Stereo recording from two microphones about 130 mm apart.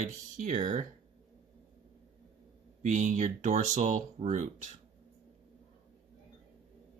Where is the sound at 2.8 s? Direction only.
70° right (ahead or behind).